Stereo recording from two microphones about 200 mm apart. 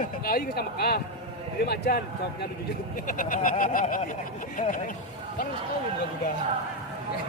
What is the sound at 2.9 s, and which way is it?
Speech, 45° left (ahead or behind).